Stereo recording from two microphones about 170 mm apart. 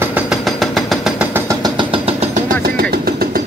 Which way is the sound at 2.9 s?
60° right (ahead or behind).